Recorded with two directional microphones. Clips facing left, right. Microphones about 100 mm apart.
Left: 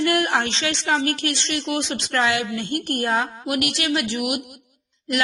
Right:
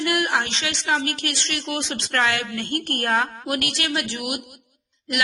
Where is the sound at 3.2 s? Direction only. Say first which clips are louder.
Left 1 dB; 35° right (ahead or behind).